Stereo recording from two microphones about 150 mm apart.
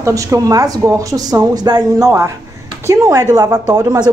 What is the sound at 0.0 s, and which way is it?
Speech, 20° right (ahead or behind).